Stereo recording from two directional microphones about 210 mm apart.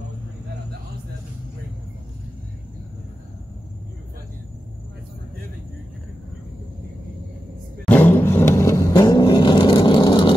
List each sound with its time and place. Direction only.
7.8 s vehicle: 10° left (ahead or behind)